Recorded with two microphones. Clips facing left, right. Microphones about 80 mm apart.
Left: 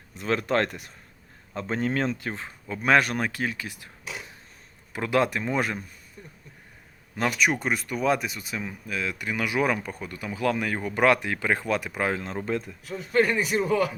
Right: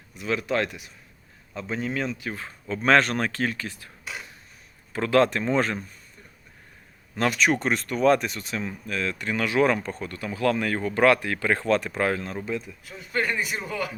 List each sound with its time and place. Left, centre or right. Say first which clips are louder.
0.2 s speech: left 1 dB; left
2.3 s speech: right 2 dB; centre
4.9 s speech: right 3 dB; centre
7.2 s speech: right 2 dB; centre; by 12.5 s left
12.5 s speech: left 3 dB; left